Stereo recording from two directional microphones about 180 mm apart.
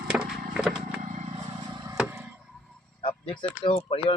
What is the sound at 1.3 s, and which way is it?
Vehicle, 25° right (ahead or behind).